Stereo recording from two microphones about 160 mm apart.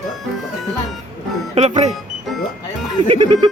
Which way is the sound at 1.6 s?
40° right (ahead or behind).